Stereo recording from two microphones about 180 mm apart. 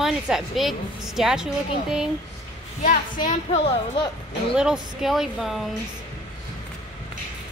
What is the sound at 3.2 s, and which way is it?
Speech, 30° left (ahead or behind).